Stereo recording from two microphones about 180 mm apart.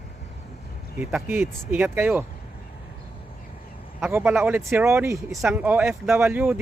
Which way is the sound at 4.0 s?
10° right (ahead or behind).